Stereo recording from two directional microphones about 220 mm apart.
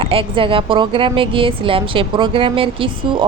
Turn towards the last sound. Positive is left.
turn(degrees=-25)  # may be behind; listen again after turning